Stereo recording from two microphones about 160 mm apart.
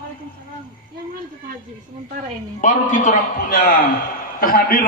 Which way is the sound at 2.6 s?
50° left (ahead or behind).